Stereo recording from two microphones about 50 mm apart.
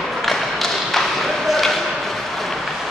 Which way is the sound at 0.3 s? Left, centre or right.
Centre.